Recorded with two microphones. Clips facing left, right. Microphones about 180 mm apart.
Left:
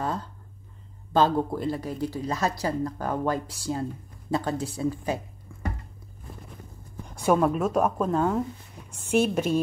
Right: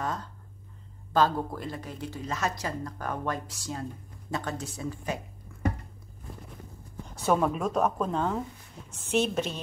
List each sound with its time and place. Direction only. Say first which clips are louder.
0.0 s a sound: left 3 dB; 30° left (ahead or behind)
1.1 s speech: left 3 dB; 25° left (ahead or behind)
7.3 s a woman's voice: left 3 dB; 5° left (ahead or behind)